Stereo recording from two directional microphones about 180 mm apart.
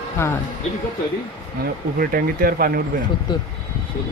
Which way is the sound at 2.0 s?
50° right (ahead or behind).